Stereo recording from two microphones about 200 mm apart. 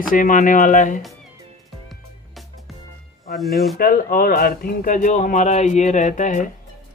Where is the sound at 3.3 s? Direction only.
Centre (ahead or behind).